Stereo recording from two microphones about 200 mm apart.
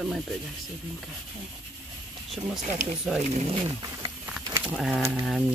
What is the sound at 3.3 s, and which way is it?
Speech, 35° right (ahead or behind).